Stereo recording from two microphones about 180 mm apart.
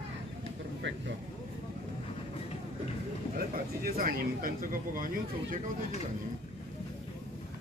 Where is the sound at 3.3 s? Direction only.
50° right (ahead or behind).